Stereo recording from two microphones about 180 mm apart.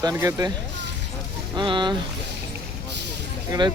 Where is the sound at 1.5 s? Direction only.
25° right (ahead or behind).